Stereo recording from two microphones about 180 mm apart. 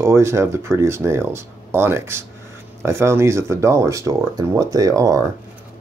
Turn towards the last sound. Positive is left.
turn(degrees=-20)  # may be behind; listen again after turning